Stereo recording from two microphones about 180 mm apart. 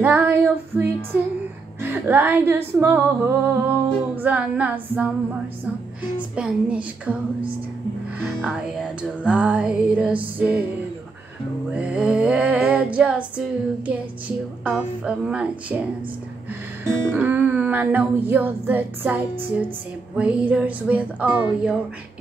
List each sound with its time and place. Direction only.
0.0 s female singing: 10° right (ahead or behind)
1.8 s music: 10° right (ahead or behind)
6.3 s music: 5° right (ahead or behind)
8.2 s music: 5° right (ahead or behind)
11.7 s music: 5° right (ahead or behind)
14.6 s music: 5° right (ahead or behind)
17.1 s music: 10° right (ahead or behind)